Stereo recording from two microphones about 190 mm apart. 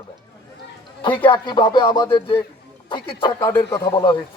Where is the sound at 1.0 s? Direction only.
25° left (ahead or behind).